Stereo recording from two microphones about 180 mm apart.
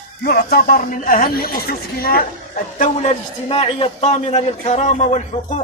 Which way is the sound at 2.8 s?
35° left (ahead or behind).